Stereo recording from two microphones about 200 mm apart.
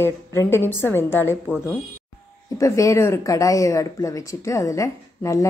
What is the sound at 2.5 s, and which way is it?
Speech, 15° left (ahead or behind).